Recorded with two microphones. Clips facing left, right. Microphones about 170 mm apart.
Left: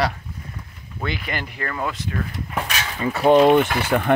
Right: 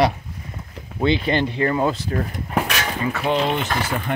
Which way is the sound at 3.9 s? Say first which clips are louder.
Left 6 dB; 70° left (ahead or behind).